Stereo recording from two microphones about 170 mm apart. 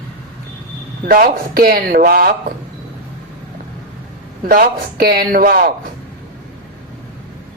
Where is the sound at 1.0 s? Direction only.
60° right (ahead or behind).